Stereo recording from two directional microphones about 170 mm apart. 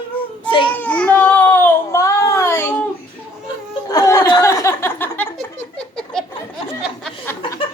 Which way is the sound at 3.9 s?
15° left (ahead or behind).